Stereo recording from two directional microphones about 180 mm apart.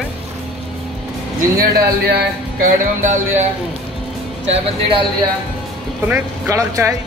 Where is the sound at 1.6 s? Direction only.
65° right (ahead or behind).